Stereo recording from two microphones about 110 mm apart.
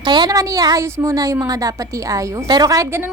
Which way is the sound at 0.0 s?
40° right (ahead or behind).